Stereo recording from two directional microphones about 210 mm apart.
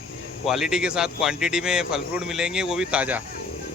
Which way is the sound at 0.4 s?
Centre (ahead or behind).